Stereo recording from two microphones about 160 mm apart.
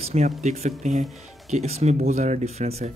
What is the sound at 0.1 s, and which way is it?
Speech, 45° right (ahead or behind).